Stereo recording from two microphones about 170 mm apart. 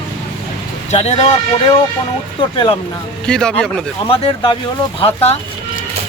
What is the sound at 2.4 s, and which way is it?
Speech, 30° left (ahead or behind).